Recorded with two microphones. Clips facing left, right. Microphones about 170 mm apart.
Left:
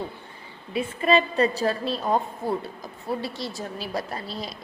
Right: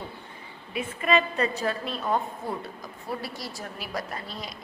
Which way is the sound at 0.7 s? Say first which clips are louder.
Left 3 dB; 30° left (ahead or behind).